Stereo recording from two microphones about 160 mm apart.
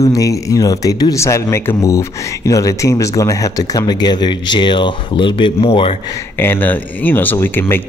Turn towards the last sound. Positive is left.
turn(degrees=15)  # may be behind; listen again after turning